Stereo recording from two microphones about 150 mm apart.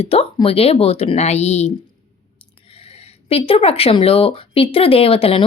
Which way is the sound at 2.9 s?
40° left (ahead or behind).